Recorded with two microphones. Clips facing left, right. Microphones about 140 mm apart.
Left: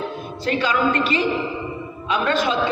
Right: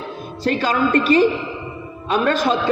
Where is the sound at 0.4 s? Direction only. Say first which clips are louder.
Right 1 dB; 40° right (ahead or behind).